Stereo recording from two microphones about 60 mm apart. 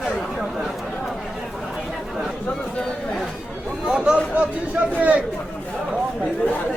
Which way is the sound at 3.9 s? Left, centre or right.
Centre.